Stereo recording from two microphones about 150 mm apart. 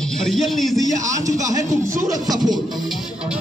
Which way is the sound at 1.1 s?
20° right (ahead or behind).